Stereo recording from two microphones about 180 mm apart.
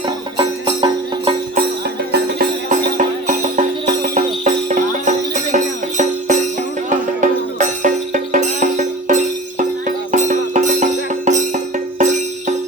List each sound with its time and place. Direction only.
0.3 s music: 25° right (ahead or behind)
2.1 s music: 50° right (ahead or behind)